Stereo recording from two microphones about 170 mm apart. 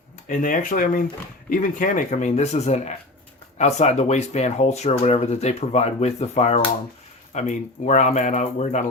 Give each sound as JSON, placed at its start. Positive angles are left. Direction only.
{"t": 0.3, "sound": "speech", "side_deg": 50}